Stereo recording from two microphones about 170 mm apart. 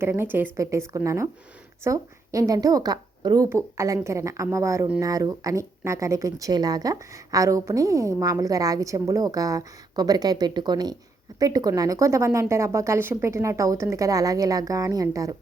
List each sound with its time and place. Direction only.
0.0 s a woman's voice: 10° right (ahead or behind)